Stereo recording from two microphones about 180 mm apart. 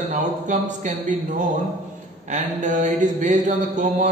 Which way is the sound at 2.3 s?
45° right (ahead or behind).